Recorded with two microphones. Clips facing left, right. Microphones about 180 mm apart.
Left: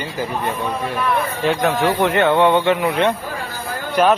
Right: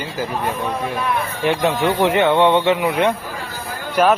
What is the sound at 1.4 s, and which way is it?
Speech, 20° right (ahead or behind).